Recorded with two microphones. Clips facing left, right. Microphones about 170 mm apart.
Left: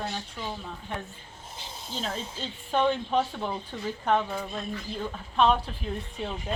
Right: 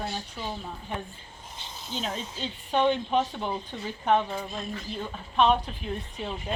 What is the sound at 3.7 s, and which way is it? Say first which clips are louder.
Speech: left 1 dB; 15° right (ahead or behind).